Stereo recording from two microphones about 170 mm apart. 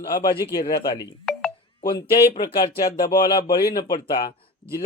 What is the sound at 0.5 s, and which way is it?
Speech, 70° left (ahead or behind).